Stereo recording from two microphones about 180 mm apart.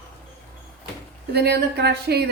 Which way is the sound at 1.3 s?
65° right (ahead or behind).